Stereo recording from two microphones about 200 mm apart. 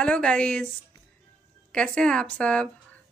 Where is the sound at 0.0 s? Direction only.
5° left (ahead or behind).